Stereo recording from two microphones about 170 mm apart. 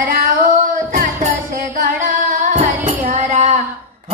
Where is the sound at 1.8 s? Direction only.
50° right (ahead or behind).